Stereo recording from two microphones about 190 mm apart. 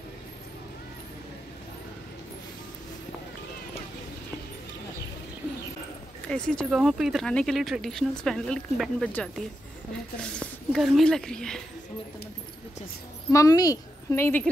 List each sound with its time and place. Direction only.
6.2 s speech: 5° left (ahead or behind)
13.3 s a woman's voice: 15° left (ahead or behind)